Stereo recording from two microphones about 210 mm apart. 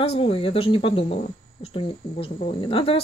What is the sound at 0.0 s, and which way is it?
Speech, 30° left (ahead or behind).